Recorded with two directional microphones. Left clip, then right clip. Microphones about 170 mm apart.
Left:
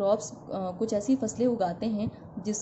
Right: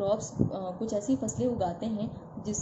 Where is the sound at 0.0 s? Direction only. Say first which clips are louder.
Left 2 dB; 35° left (ahead or behind).